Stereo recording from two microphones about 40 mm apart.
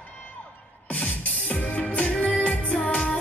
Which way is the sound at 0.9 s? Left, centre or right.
Left.